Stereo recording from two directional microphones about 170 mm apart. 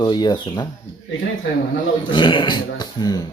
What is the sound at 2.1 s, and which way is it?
Speech, 30° left (ahead or behind).